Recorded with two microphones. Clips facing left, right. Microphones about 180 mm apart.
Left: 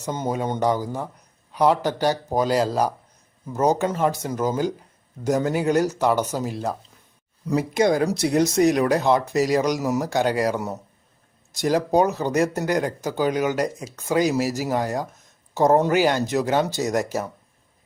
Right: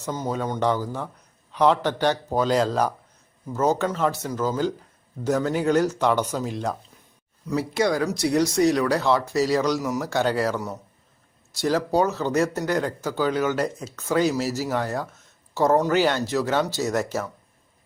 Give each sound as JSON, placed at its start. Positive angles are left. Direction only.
{"t": 0.0, "sound": "speech", "side_deg": 20}
{"t": 7.5, "sound": "speech", "side_deg": 15}